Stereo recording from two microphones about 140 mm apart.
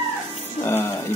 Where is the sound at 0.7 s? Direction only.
15° left (ahead or behind).